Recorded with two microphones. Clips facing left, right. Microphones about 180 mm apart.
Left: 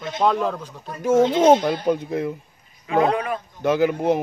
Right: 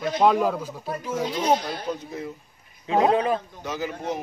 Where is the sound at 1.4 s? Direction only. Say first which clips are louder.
Left 8 dB; 50° left (ahead or behind).